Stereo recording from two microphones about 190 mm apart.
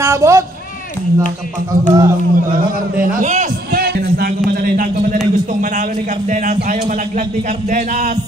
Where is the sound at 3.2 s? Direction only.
40° right (ahead or behind).